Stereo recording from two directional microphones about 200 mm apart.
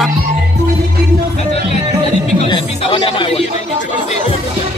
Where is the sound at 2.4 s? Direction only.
25° left (ahead or behind).